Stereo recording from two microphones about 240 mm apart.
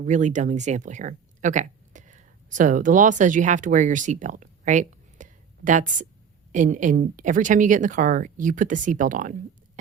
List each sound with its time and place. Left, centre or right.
0.0 s speech: right